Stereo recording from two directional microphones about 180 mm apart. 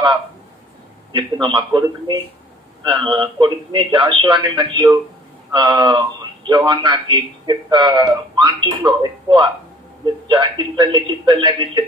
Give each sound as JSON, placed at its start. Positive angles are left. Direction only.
{"t": 1.1, "sound": "a man's voice", "side_deg": -25}